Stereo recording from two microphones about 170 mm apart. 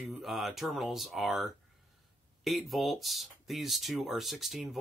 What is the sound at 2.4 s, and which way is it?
Speech, centre (ahead or behind).